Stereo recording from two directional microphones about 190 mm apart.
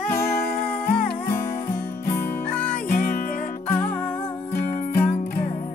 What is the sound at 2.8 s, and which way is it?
Music, 50° left (ahead or behind).